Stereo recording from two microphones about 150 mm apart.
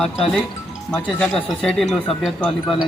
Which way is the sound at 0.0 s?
5° left (ahead or behind).